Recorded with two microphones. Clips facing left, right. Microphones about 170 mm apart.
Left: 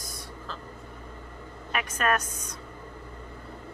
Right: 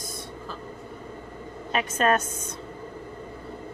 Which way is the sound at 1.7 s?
30° right (ahead or behind).